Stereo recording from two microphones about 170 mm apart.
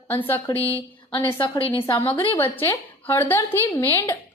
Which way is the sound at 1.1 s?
30° left (ahead or behind).